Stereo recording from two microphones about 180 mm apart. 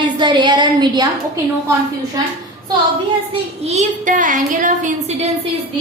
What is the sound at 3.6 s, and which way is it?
A woman's voice, 40° right (ahead or behind).